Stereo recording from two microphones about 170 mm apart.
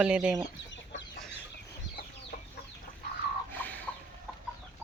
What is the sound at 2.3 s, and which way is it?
Chicken, 50° left (ahead or behind).